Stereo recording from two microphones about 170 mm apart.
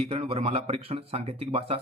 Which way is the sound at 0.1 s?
35° right (ahead or behind).